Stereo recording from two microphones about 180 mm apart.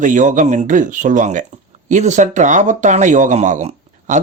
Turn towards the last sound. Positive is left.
turn(degrees=-40)  # may be behind; listen again after turning